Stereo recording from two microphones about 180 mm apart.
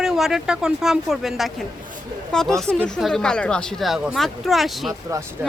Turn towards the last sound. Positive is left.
turn(degrees=-15)  # may be behind; listen again after turning